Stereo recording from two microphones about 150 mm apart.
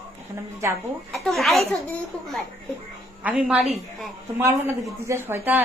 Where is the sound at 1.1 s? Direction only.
Centre (ahead or behind).